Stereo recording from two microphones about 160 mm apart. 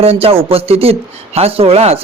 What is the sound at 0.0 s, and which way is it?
A man's voice, 40° right (ahead or behind).